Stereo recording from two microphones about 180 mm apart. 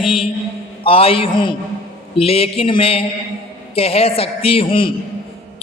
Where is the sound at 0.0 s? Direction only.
30° left (ahead or behind).